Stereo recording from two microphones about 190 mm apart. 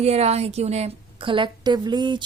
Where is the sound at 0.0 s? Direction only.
35° right (ahead or behind).